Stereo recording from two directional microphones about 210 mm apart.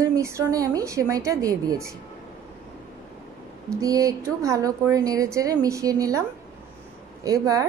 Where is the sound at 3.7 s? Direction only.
15° right (ahead or behind).